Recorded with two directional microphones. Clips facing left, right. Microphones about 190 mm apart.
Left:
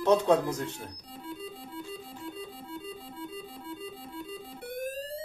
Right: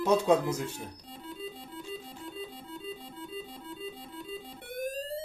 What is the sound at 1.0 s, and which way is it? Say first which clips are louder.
Organ: left 1 dB; centre (ahead or behind).